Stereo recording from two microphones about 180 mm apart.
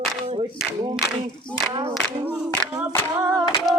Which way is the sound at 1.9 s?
5° right (ahead or behind).